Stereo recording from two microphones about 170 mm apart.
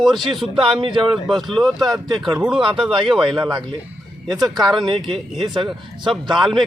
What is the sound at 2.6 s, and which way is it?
Speech, 30° right (ahead or behind).